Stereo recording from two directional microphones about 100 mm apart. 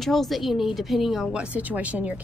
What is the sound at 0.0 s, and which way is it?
Speech, centre (ahead or behind).